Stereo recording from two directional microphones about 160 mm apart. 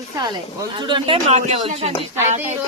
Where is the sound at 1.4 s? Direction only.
45° right (ahead or behind).